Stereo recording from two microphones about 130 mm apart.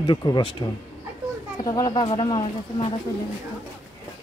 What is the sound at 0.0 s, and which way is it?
Speech, 35° left (ahead or behind).